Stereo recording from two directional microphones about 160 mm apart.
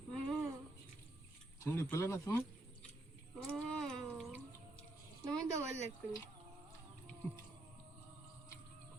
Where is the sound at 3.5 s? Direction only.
5° left (ahead or behind).